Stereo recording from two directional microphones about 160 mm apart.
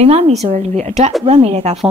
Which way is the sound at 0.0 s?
40° right (ahead or behind).